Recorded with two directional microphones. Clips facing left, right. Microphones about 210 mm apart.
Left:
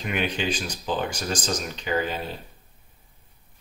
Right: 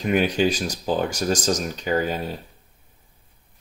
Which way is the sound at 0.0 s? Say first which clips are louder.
Right 7 dB; 40° right (ahead or behind).